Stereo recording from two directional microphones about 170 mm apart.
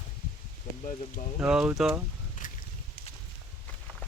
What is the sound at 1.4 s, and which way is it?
Speech, 5° right (ahead or behind).